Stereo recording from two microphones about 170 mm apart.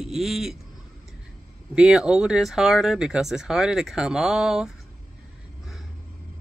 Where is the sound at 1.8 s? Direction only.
5° right (ahead or behind).